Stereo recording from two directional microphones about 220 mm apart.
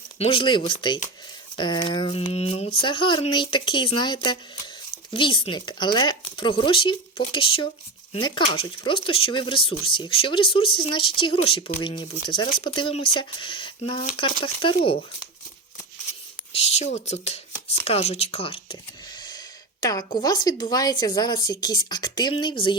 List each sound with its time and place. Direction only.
0.2 s speech: 25° left (ahead or behind)
16.6 s speech: 30° left (ahead or behind)